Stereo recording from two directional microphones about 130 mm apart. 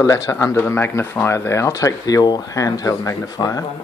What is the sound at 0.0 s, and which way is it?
Speech, 25° left (ahead or behind).